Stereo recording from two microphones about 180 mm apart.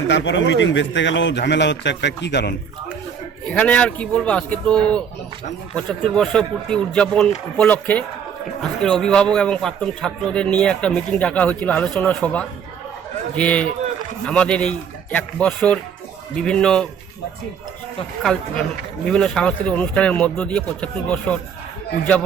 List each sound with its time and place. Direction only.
0.1 s speech: 90° left; by 2.6 s 70° left (ahead or behind)
3.5 s a man's voice: 5° left (ahead or behind)
18.2 s a man's voice: 5° left (ahead or behind)